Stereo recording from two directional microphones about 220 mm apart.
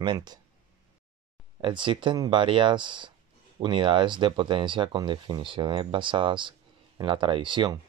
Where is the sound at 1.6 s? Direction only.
25° right (ahead or behind).